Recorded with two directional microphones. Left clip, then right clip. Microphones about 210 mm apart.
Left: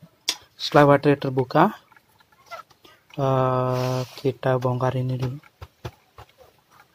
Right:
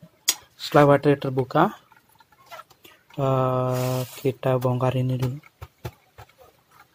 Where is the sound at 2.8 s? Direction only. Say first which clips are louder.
Left 1 dB; 5° left (ahead or behind).